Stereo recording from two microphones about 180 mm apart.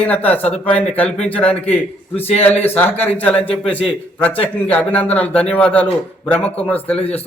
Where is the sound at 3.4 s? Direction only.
30° left (ahead or behind).